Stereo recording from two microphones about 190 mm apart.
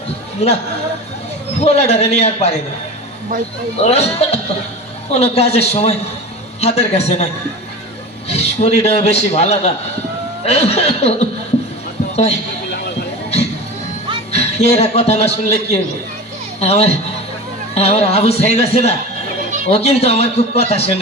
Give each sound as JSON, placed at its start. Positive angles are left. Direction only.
{"t": 0.4, "sound": "a man's voice", "side_deg": 35}
{"t": 1.6, "sound": "a man's voice", "side_deg": 35}
{"t": 3.8, "sound": "a man's voice", "side_deg": 35}
{"t": 8.3, "sound": "a man's voice", "side_deg": 35}
{"t": 14.3, "sound": "a man's voice", "side_deg": 35}